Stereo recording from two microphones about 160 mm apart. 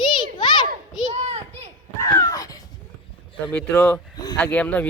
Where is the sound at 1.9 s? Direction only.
20° left (ahead or behind).